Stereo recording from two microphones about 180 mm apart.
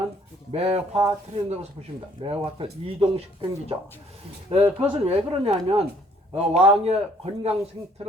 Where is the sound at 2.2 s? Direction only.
30° right (ahead or behind).